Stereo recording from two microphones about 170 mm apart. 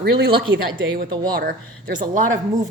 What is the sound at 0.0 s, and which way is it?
Speech, 70° right (ahead or behind).